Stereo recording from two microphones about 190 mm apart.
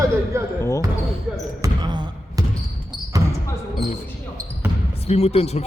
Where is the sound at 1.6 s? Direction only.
25° right (ahead or behind).